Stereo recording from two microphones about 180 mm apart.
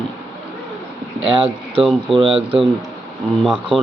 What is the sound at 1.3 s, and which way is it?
Speech, 30° right (ahead or behind).